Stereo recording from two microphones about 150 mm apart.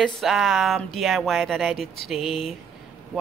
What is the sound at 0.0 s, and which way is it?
Speech, centre (ahead or behind).